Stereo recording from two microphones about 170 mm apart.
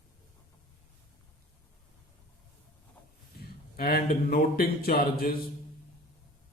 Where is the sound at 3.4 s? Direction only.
65° left (ahead or behind).